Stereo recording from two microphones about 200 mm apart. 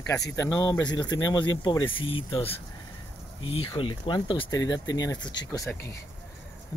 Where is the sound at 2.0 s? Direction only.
25° left (ahead or behind).